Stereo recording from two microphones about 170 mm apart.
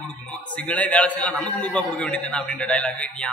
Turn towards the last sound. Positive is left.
turn(degrees=5)  # may be behind; listen again after turning